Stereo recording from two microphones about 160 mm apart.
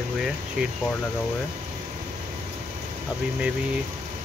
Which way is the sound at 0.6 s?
5° right (ahead or behind).